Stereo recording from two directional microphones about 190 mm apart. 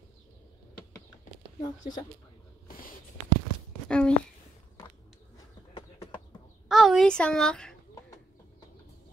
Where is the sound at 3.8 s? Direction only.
5° left (ahead or behind).